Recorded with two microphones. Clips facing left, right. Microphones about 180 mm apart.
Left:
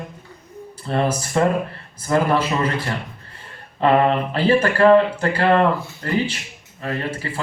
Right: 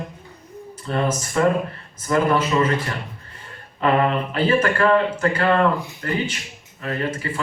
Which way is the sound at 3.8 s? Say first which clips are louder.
Left 3 dB; 30° left (ahead or behind).